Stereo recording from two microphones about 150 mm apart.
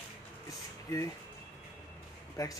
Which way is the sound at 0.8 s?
20° left (ahead or behind).